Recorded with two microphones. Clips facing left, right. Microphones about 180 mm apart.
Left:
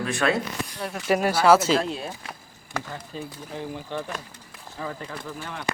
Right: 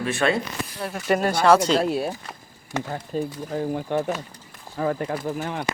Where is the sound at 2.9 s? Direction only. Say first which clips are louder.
Right 8 dB; 45° right (ahead or behind).